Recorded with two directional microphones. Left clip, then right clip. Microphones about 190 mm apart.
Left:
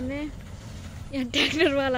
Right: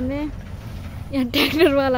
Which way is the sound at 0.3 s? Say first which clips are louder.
Right 5 dB; 60° left (ahead or behind).